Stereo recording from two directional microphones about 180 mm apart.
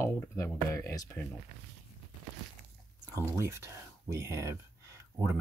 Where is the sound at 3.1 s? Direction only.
15° right (ahead or behind).